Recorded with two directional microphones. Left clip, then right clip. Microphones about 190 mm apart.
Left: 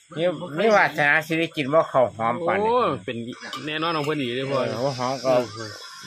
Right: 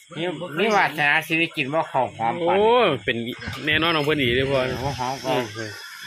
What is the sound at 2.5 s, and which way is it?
Speech, 5° right (ahead or behind).